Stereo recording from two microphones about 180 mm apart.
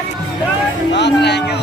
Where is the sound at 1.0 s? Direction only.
70° left (ahead or behind).